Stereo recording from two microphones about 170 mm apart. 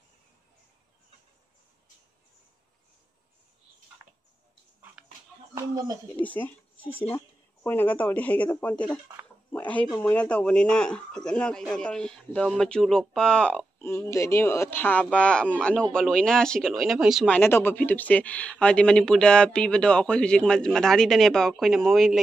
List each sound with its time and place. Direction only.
5.5 s speech: 20° right (ahead or behind)
6.1 s speech: 10° left (ahead or behind)
9.5 s a sound: 10° left (ahead or behind)
10.0 s speech: 5° left (ahead or behind)
17.4 s speech: 15° left (ahead or behind)